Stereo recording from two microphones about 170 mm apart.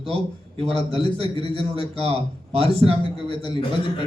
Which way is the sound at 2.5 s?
35° right (ahead or behind).